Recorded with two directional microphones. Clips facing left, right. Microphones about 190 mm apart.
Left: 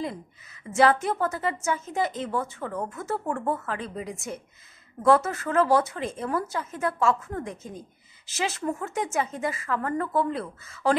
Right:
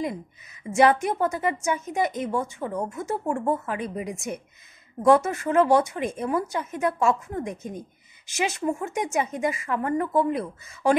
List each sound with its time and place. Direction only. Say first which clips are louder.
0.7 s a woman's voice: right 2 dB; 15° right (ahead or behind)